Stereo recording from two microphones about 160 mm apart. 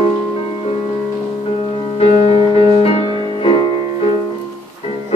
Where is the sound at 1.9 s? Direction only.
40° left (ahead or behind).